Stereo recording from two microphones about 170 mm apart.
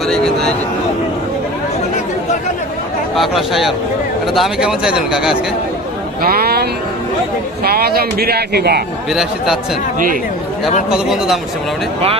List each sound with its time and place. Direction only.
3.2 s speech: centre (ahead or behind)
6.2 s speech: 65° right (ahead or behind)
9.0 s speech: centre (ahead or behind)
10.8 s speech: 5° right (ahead or behind)